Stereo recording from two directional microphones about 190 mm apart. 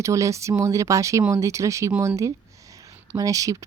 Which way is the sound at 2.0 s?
15° right (ahead or behind).